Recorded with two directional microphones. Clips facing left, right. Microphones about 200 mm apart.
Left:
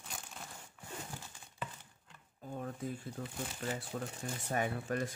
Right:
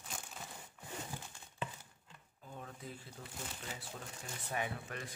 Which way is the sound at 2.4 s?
45° left (ahead or behind).